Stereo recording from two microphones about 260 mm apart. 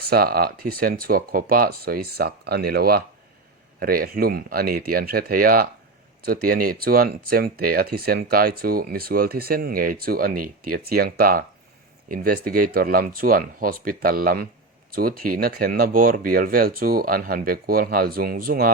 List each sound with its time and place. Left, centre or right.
0.0 s speech: right